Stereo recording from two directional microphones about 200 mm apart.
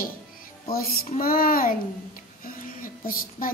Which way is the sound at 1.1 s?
45° left (ahead or behind).